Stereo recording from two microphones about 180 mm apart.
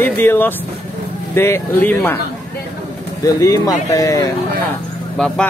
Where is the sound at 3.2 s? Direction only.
20° left (ahead or behind).